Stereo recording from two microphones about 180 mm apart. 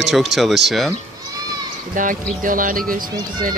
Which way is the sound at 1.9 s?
50° right (ahead or behind).